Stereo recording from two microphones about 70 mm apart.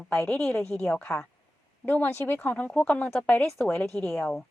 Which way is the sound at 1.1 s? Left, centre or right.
Left.